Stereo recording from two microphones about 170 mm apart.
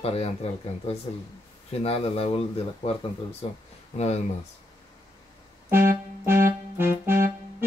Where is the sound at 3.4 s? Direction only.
35° left (ahead or behind).